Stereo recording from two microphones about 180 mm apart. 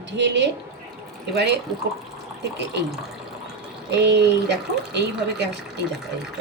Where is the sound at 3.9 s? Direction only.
75° right (ahead or behind).